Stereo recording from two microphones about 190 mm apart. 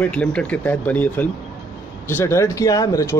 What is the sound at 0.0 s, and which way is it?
Speech, 5° left (ahead or behind).